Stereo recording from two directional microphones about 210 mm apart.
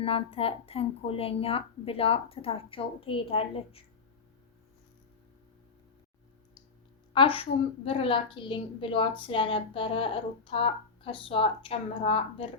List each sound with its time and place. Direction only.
0.0 s a woman's voice: 25° left (ahead or behind)
7.1 s a woman's voice: 25° left (ahead or behind)